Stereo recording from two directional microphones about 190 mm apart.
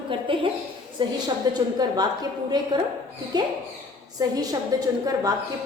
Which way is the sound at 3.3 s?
20° right (ahead or behind).